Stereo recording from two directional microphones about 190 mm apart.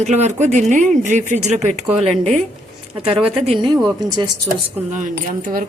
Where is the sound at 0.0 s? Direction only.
40° right (ahead or behind).